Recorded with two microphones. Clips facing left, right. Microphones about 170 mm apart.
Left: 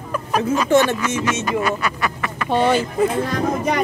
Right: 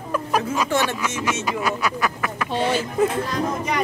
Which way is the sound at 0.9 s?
5° right (ahead or behind).